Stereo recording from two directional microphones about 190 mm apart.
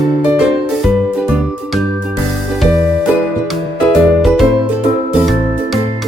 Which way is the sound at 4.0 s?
Centre (ahead or behind).